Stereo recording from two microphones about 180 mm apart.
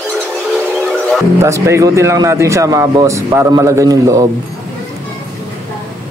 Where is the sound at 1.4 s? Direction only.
15° right (ahead or behind).